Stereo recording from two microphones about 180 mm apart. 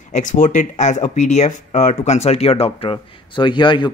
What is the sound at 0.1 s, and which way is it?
Speech, 45° left (ahead or behind).